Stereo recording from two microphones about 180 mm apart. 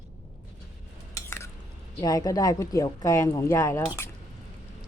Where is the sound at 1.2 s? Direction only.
15° left (ahead or behind).